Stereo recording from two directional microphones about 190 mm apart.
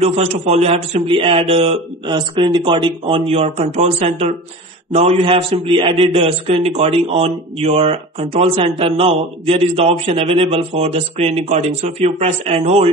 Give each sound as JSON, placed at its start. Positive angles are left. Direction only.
{"t": 0.0, "sound": "a man's voice", "side_deg": -30}